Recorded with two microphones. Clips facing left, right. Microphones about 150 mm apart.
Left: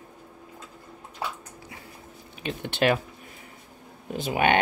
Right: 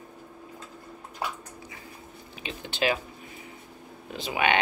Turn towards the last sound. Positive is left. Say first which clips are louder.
# left 3 dB
turn(degrees=45)  # may be behind; listen again after turning